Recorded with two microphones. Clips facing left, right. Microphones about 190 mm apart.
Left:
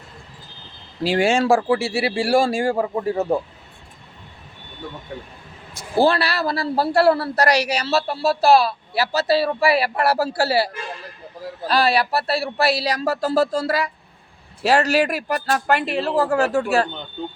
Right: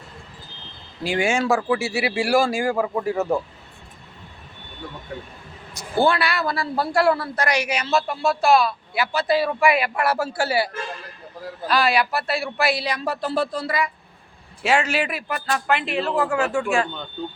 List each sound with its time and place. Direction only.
1.0 s a man's voice: 35° left (ahead or behind)
6.0 s a man's voice: 35° left (ahead or behind)